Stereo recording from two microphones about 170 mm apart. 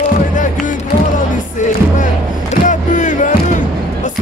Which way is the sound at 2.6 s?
50° left (ahead or behind).